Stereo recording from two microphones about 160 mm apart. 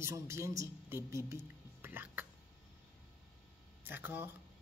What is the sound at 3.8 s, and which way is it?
Speech, 15° right (ahead or behind).